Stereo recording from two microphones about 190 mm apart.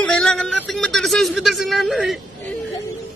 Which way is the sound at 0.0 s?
5° left (ahead or behind).